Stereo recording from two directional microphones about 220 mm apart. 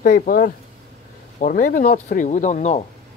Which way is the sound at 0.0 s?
40° left (ahead or behind).